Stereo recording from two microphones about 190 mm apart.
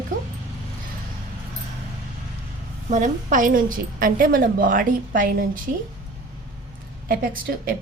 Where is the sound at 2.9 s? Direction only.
40° right (ahead or behind).